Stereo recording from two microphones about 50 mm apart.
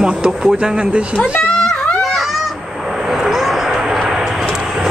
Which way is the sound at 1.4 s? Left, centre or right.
Left.